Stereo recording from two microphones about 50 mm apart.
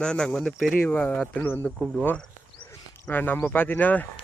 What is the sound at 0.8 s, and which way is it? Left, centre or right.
Speech, left.